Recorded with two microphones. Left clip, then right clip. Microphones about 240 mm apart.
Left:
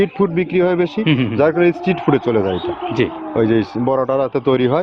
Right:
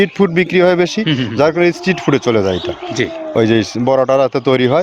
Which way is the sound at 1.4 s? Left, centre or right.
Right.